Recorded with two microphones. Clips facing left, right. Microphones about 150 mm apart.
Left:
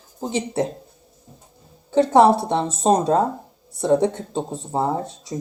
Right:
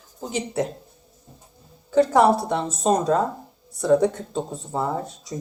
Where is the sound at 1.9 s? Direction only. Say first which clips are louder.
Left 2 dB; 25° left (ahead or behind).